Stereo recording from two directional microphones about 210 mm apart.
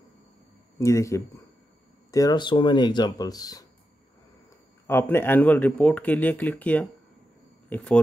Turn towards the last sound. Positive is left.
turn(degrees=5)  # may be behind; listen again after turning